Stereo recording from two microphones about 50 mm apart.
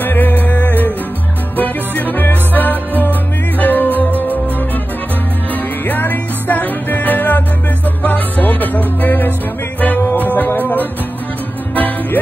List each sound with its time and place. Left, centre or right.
0.0 s music: left
5.5 s music: left
10.3 s music: left